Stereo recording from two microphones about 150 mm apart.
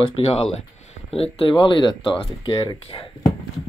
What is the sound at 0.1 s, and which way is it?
Speech, 40° left (ahead or behind).